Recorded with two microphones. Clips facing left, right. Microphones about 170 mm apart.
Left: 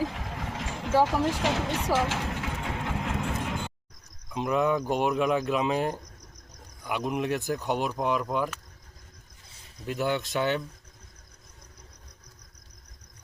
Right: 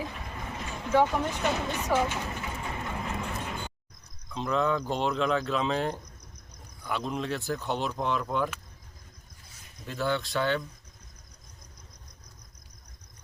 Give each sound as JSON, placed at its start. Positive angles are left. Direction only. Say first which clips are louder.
{"t": 0.1, "sound": "vehicle", "louder": "left 3 dB", "side_deg": 90}
{"t": 4.3, "sound": "speech", "louder": "left 2 dB", "side_deg": 15}
{"t": 6.1, "sound": "cricket", "louder": "left 1 dB", "side_deg": 90}
{"t": 6.8, "sound": "speech", "louder": "left 3 dB", "side_deg": 15}
{"t": 9.8, "sound": "speech", "louder": "left 2 dB", "side_deg": 15}